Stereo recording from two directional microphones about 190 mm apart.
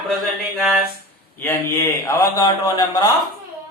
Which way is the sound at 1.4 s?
10° left (ahead or behind).